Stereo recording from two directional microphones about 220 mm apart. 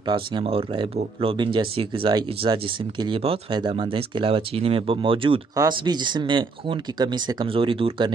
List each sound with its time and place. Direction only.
0.0 s speech: 20° right (ahead or behind)